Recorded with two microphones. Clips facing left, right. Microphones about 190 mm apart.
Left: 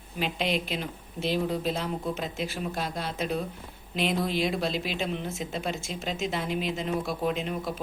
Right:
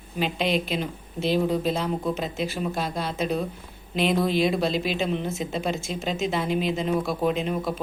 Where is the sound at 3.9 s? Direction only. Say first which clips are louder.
Right 5 dB; 35° right (ahead or behind).